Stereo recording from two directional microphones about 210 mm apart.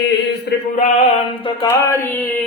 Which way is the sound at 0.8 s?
35° left (ahead or behind).